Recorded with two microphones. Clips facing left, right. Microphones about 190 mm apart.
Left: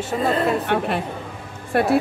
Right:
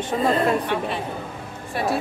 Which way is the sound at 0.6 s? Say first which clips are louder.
Left 3 dB; 60° left (ahead or behind).